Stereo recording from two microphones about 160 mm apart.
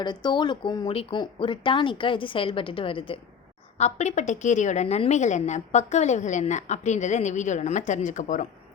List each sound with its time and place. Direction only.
0.0 s speech: 25° left (ahead or behind)
3.8 s a woman's voice: 45° left (ahead or behind)